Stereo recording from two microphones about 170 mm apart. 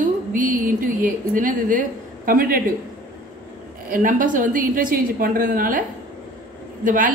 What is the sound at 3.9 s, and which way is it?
Speech, 50° right (ahead or behind).